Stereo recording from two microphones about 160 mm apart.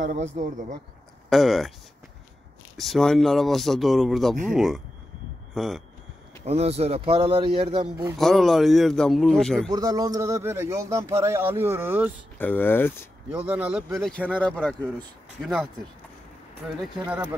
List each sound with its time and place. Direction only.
0.1 s speech: 50° right (ahead or behind)
1.3 s speech: centre (ahead or behind)
2.8 s speech: centre (ahead or behind)
6.4 s a man's voice: 40° right (ahead or behind)
8.2 s speech: centre (ahead or behind)
9.7 s a man's voice: 25° right (ahead or behind)
12.4 s speech: 10° left (ahead or behind)
13.3 s a man's voice: 10° right (ahead or behind)
14.4 s speech: 10° left (ahead or behind)
17.1 s a man's voice: 10° right (ahead or behind)